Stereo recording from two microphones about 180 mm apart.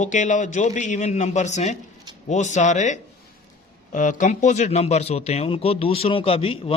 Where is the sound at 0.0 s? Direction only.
40° left (ahead or behind).